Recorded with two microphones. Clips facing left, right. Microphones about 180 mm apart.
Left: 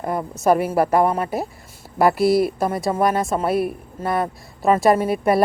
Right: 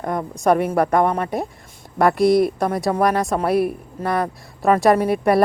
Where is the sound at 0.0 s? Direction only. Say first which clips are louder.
Even; 5° left (ahead or behind).